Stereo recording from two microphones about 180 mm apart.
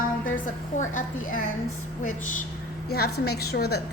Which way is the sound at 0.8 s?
45° left (ahead or behind).